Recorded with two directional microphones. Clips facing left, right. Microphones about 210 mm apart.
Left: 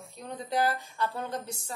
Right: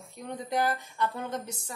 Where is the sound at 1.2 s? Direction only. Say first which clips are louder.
Right 1 dB; 20° right (ahead or behind).